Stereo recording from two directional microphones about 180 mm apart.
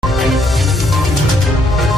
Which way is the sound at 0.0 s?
Centre (ahead or behind).